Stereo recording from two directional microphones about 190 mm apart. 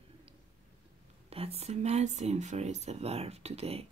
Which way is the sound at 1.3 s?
30° right (ahead or behind).